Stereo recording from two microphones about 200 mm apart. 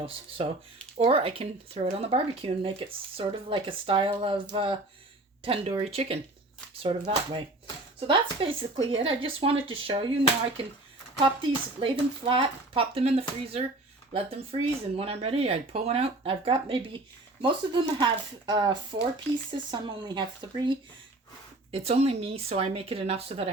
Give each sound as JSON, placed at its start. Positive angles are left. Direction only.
{"t": 0.4, "sound": "speech", "side_deg": -30}
{"t": 11.3, "sound": "speech", "side_deg": -25}